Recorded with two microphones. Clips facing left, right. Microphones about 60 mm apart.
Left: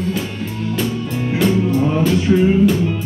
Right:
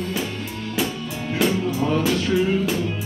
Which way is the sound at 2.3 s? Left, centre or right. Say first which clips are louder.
Left 6 dB; centre.